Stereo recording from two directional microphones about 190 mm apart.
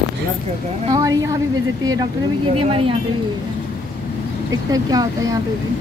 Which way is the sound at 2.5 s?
30° right (ahead or behind).